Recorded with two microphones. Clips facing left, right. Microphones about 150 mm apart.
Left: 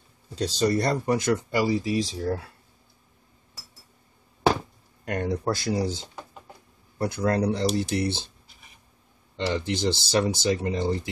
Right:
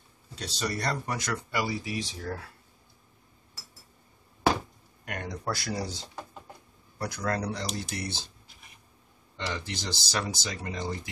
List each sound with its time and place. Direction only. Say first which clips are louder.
0.6 s speech: left 8 dB; 30° left (ahead or behind)
5.0 s speech: left 8 dB; 30° left (ahead or behind)
9.5 s speech: left 10 dB; 25° left (ahead or behind)